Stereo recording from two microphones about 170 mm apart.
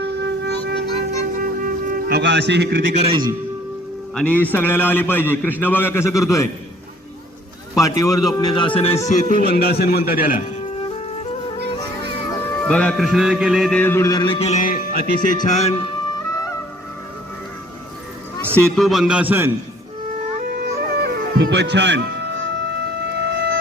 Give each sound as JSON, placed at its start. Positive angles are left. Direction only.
{"t": 0.0, "sound": "wind instrument", "side_deg": -90}
{"t": 1.4, "sound": "music", "side_deg": -55}
{"t": 2.9, "sound": "a man's voice", "side_deg": -35}
{"t": 4.1, "sound": "a man's voice", "side_deg": 5}
{"t": 7.8, "sound": "a man's voice", "side_deg": 20}
{"t": 9.5, "sound": "a man's voice", "side_deg": 65}
{"t": 11.7, "sound": "music", "side_deg": 30}
{"t": 12.6, "sound": "a man's voice", "side_deg": 5}
{"t": 14.6, "sound": "music", "side_deg": 55}
{"t": 18.5, "sound": "a man's voice", "side_deg": 0}
{"t": 20.5, "sound": "music", "side_deg": -60}
{"t": 22.8, "sound": "music", "side_deg": -75}